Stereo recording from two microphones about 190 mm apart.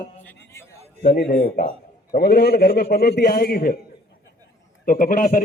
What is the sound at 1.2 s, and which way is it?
A man's voice, 55° left (ahead or behind).